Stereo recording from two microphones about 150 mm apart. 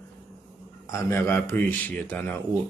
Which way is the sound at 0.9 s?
15° left (ahead or behind).